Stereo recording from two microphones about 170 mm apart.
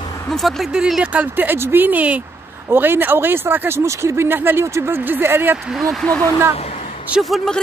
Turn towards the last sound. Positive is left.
turn(degrees=0)  # may be behind; listen again after turning